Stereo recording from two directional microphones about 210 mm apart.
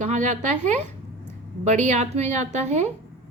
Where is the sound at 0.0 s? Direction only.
35° right (ahead or behind).